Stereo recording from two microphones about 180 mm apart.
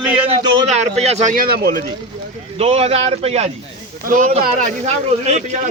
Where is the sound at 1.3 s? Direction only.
55° right (ahead or behind).